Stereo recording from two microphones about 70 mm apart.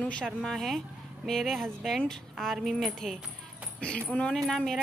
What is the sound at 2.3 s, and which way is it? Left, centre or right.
Speech, centre.